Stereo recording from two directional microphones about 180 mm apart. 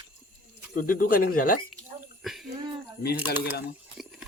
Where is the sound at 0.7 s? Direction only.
50° left (ahead or behind).